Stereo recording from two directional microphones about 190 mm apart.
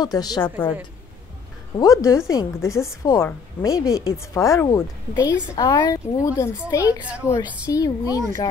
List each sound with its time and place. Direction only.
0.0 s a woman's voice: 20° left (ahead or behind)
1.8 s a woman's voice: 15° left (ahead or behind)
7.0 s a woman's voice: 5° right (ahead or behind)
7.7 s a woman's voice: 15° left (ahead or behind)